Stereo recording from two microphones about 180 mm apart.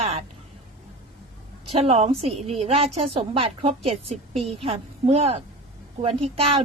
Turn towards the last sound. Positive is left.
turn(degrees=-35)  # may be behind; listen again after turning